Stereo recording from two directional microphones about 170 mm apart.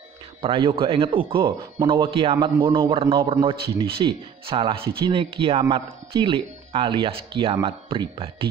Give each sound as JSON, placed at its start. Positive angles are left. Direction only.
{"t": 0.4, "sound": "speech", "side_deg": -30}